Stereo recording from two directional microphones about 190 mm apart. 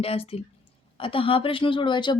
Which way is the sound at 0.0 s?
30° left (ahead or behind).